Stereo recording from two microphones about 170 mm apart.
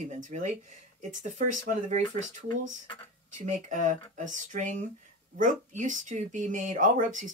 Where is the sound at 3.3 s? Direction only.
45° right (ahead or behind).